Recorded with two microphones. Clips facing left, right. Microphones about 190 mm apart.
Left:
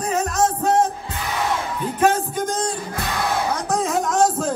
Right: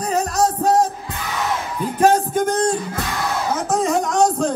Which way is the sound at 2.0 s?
40° right (ahead or behind).